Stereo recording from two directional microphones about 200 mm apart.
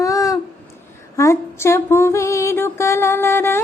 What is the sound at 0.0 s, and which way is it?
Babbling, 15° left (ahead or behind).